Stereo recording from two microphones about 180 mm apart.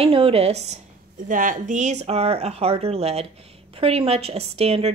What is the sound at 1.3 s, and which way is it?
A woman's voice, 50° right (ahead or behind).